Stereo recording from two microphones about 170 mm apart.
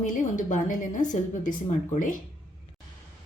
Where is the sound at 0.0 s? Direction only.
50° left (ahead or behind).